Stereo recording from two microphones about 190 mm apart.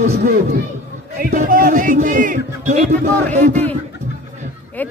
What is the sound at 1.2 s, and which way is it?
Speech, 45° right (ahead or behind).